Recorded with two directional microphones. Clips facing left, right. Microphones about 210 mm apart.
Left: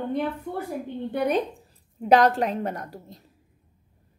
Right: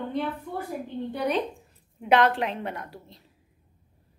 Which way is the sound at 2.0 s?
40° left (ahead or behind).